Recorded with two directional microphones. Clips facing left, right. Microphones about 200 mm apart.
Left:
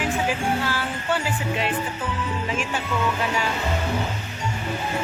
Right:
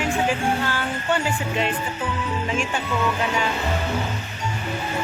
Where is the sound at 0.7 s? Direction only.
5° left (ahead or behind).